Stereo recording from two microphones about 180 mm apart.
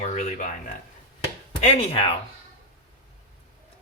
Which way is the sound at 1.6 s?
35° left (ahead or behind).